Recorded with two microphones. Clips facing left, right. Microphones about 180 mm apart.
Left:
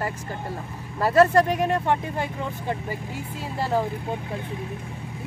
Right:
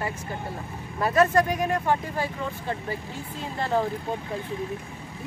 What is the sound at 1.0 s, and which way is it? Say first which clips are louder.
Speech: left 3 dB; 35° left (ahead or behind).